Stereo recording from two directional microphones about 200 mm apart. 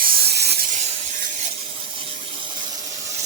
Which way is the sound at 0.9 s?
40° right (ahead or behind).